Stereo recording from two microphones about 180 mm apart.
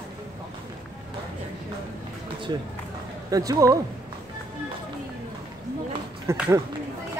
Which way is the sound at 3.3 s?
20° right (ahead or behind).